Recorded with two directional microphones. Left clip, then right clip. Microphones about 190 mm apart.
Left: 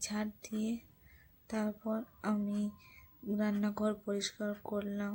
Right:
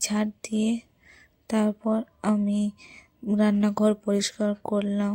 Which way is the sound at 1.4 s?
45° right (ahead or behind).